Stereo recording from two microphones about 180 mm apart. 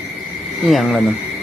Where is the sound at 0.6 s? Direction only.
Centre (ahead or behind).